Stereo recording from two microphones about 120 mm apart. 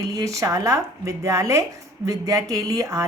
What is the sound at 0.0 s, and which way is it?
Speech, 30° right (ahead or behind).